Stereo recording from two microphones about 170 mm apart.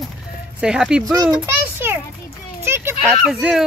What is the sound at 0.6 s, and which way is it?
Speech, 5° right (ahead or behind).